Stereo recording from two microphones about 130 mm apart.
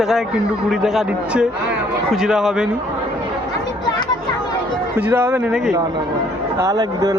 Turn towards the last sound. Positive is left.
turn(degrees=-25)  # may be behind; listen again after turning